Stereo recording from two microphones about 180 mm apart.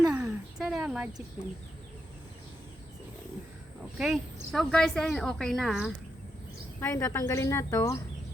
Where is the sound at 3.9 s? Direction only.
Centre (ahead or behind).